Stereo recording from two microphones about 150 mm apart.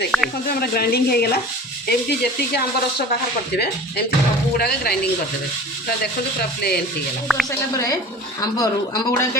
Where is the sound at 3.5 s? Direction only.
90° left.